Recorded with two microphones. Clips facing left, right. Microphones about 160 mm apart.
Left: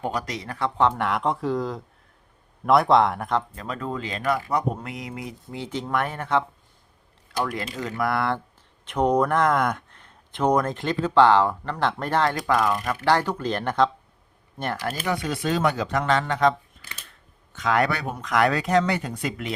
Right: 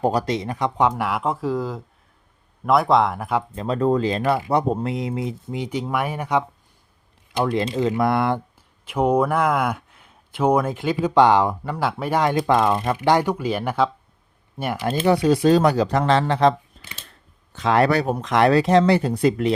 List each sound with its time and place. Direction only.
0.0 s speech: 35° right (ahead or behind)
0.3 s speech: 20° right (ahead or behind)
3.5 s speech: 30° right (ahead or behind); by 6.4 s 15° right (ahead or behind)
7.3 s speech: 25° right (ahead or behind)
8.8 s speech: 5° right (ahead or behind)
12.4 s speech: 25° right (ahead or behind)
13.0 s speech: 15° right (ahead or behind)
14.8 s speech: 30° right (ahead or behind)